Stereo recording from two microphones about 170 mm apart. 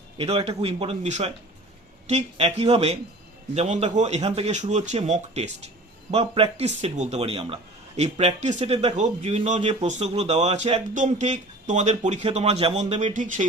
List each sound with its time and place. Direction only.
0.2 s speech: 35° right (ahead or behind)